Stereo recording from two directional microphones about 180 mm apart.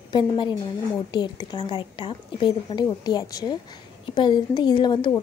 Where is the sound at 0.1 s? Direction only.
25° left (ahead or behind).